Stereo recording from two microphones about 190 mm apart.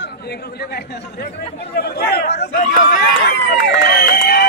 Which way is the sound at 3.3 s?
65° left (ahead or behind).